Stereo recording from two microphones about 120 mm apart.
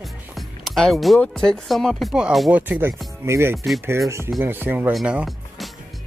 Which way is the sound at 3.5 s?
Centre (ahead or behind).